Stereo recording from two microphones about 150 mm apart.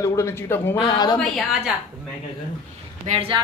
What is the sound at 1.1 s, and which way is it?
Speech, centre (ahead or behind).